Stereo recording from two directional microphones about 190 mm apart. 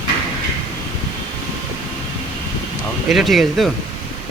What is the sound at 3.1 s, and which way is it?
Speech, centre (ahead or behind).